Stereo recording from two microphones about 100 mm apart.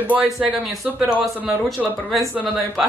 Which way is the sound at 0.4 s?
Centre (ahead or behind).